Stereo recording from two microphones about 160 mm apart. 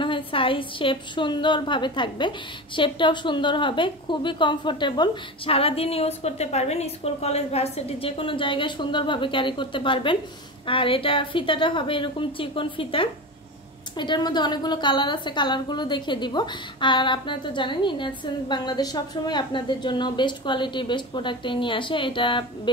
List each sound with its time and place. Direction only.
0.0 s a woman's voice: 30° left (ahead or behind)